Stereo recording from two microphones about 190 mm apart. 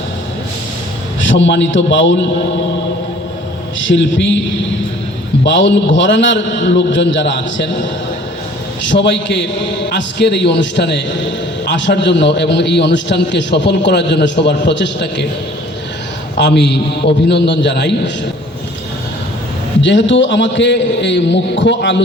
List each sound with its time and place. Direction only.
1.3 s a man's voice: 70° left (ahead or behind)
3.8 s a man's voice: 75° left (ahead or behind)
5.5 s a man's voice: 75° left (ahead or behind)
8.9 s a man's voice: 70° left (ahead or behind)
16.4 s a man's voice: 65° left (ahead or behind)
19.8 s a man's voice: 75° left (ahead or behind)